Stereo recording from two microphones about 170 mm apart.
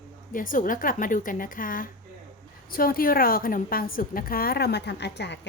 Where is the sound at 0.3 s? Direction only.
55° left (ahead or behind).